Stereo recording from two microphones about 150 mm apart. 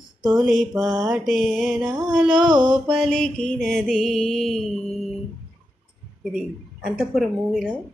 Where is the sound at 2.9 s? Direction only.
5° left (ahead or behind).